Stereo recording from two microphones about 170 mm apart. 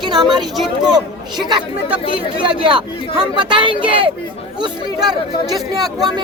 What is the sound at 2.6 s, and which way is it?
Speech, 30° right (ahead or behind).